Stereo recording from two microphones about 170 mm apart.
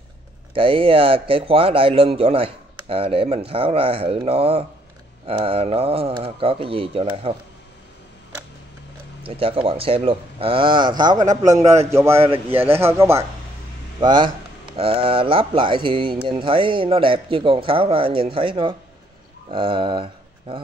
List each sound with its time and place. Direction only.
0.6 s speech: 30° right (ahead or behind)
9.2 s speech: 30° right (ahead or behind)
11.2 s a man's voice: 45° right (ahead or behind)
11.9 s speech: 15° right (ahead or behind)
12.2 s speech: 35° right (ahead or behind)
12.8 s speech: 15° right (ahead or behind)
13.9 s speech: 25° right (ahead or behind)
19.5 s a sound: 30° right (ahead or behind)